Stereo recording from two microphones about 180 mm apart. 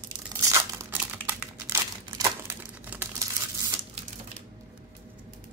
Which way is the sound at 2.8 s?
10° right (ahead or behind).